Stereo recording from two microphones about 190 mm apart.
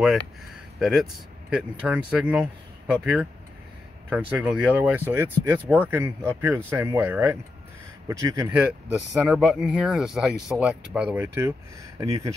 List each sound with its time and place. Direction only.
0.7 s speech: centre (ahead or behind); by 8.5 s 20° right (ahead or behind)
8.5 s speech: 5° right (ahead or behind)
12.0 s speech: 15° right (ahead or behind)